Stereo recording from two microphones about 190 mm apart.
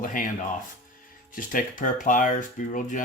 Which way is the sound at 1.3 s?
45° left (ahead or behind).